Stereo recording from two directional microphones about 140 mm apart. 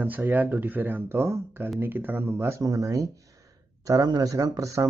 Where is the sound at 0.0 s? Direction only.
15° right (ahead or behind).